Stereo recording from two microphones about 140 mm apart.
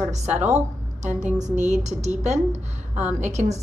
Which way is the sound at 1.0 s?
60° right (ahead or behind).